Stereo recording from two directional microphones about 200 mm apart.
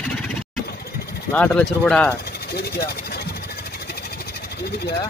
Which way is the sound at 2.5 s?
50° left (ahead or behind).